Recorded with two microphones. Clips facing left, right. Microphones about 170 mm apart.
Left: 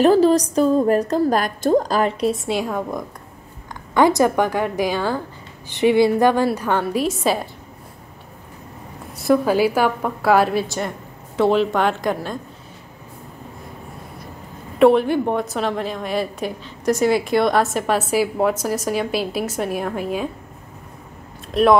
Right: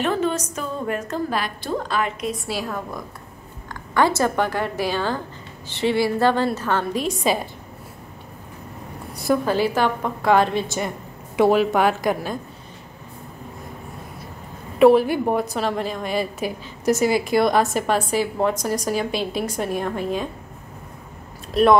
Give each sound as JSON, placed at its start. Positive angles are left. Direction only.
{"t": 0.0, "sound": "a woman's voice", "side_deg": 35}
{"t": 2.5, "sound": "a woman's voice", "side_deg": 20}
{"t": 3.9, "sound": "a woman's voice", "side_deg": 15}
{"t": 9.1, "sound": "a woman's voice", "side_deg": 0}
{"t": 11.3, "sound": "a woman's voice", "side_deg": -10}
{"t": 14.8, "sound": "a woman's voice", "side_deg": -5}